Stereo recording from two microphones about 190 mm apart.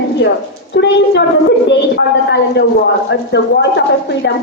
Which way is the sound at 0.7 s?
65° left (ahead or behind).